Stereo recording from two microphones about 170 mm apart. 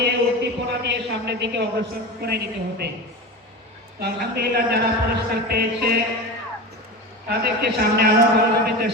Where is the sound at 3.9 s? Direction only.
70° right (ahead or behind).